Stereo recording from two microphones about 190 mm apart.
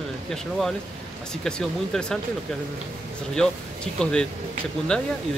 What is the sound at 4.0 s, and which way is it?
Speech, 5° left (ahead or behind).